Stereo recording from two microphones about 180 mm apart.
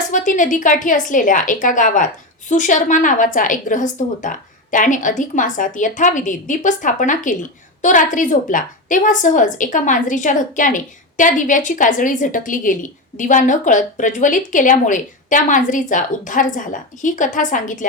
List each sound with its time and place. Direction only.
0.1 s a woman's voice: 45° left (ahead or behind)